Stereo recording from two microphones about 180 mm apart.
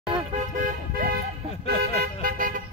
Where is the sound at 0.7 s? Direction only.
50° right (ahead or behind).